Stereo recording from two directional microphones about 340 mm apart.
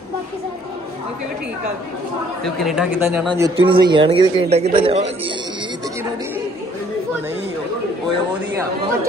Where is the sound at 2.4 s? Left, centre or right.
Centre.